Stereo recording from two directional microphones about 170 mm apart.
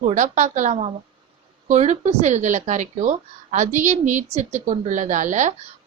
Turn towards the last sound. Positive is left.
turn(degrees=-45)  # may be behind; listen again after turning